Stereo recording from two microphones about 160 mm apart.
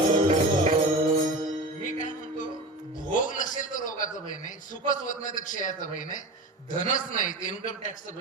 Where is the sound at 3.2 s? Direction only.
55° left (ahead or behind).